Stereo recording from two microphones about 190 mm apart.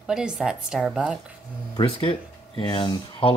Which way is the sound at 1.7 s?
25° left (ahead or behind).